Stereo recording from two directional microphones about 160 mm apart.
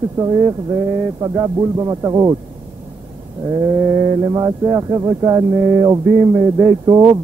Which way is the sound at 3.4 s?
25° right (ahead or behind).